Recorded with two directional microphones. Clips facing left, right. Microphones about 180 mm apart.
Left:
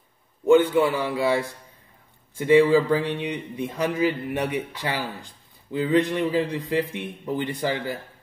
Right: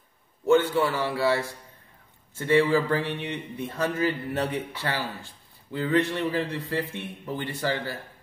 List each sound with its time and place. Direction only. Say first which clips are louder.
0.5 s a man's voice: left 4 dB; 15° left (ahead or behind)